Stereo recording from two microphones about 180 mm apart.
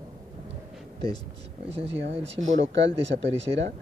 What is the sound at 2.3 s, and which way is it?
Speech, 90° right.